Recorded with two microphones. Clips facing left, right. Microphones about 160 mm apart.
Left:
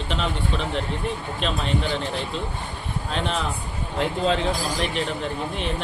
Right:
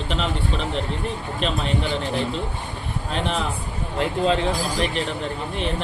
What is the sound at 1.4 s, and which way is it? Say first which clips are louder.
Speech: right 1 dB; centre (ahead or behind).